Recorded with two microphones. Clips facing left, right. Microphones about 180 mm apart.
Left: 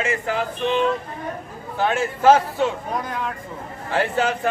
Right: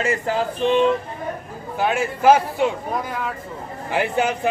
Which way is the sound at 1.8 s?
10° right (ahead or behind).